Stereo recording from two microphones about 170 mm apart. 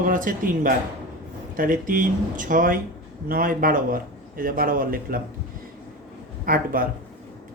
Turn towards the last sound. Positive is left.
turn(degrees=-55)  # may be behind; listen again after turning